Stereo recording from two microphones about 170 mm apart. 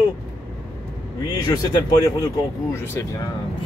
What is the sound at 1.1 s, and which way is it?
Speech, 25° left (ahead or behind).